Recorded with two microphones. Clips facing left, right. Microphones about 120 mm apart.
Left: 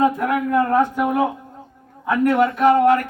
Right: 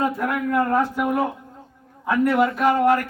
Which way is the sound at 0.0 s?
Centre (ahead or behind).